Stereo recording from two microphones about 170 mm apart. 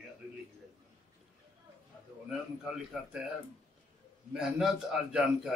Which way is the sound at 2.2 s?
5° right (ahead or behind).